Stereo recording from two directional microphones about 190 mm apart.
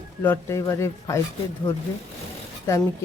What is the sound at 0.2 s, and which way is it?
Speech, 10° left (ahead or behind).